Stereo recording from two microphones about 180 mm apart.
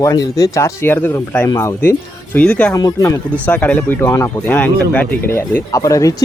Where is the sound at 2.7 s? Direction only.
20° left (ahead or behind).